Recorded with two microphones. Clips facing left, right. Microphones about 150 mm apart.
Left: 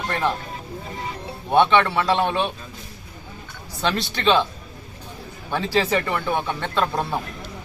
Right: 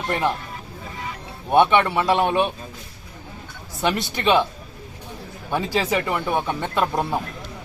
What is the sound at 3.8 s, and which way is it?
Speech, 15° right (ahead or behind).